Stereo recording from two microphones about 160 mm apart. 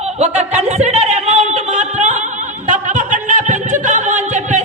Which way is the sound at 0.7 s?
45° right (ahead or behind).